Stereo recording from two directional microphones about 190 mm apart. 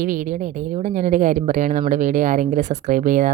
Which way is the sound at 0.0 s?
45° right (ahead or behind).